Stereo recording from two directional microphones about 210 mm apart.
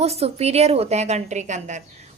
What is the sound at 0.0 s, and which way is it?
A woman's voice, 30° right (ahead or behind).